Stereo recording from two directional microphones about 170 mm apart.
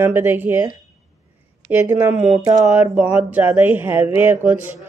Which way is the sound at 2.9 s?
10° right (ahead or behind).